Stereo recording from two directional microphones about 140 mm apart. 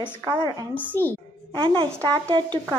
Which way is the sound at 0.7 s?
15° left (ahead or behind).